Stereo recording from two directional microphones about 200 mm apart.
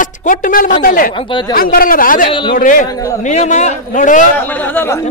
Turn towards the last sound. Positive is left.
turn(degrees=10)  # may be behind; listen again after turning